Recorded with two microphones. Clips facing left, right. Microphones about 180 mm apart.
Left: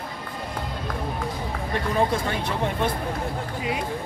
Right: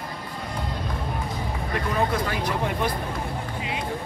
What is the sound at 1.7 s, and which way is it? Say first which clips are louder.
Speech: left 2 dB; 25° left (ahead or behind).